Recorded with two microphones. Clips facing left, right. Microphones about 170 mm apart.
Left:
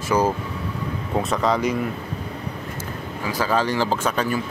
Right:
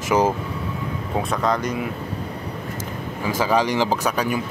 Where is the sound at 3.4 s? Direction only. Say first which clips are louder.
Right 2 dB; 15° right (ahead or behind).